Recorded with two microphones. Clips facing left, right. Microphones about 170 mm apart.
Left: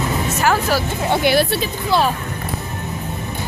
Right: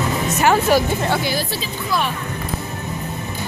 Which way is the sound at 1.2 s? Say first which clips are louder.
Left 7 dB; 65° left (ahead or behind).